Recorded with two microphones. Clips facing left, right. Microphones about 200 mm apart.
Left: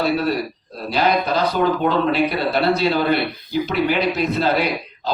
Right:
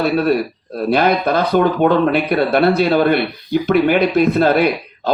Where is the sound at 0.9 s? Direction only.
55° right (ahead or behind).